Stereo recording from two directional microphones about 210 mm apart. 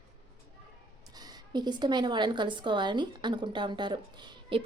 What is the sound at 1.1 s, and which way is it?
A woman's voice, 20° right (ahead or behind).